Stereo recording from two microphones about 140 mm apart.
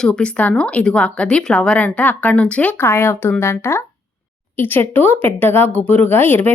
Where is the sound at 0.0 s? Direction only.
10° left (ahead or behind).